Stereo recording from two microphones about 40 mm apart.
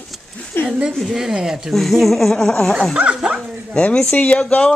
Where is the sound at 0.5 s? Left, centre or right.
Left.